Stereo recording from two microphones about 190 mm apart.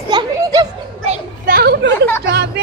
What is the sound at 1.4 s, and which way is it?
A woman's voice, 55° right (ahead or behind).